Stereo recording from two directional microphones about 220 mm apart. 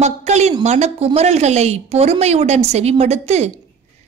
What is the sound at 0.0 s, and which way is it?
Speech, 30° right (ahead or behind).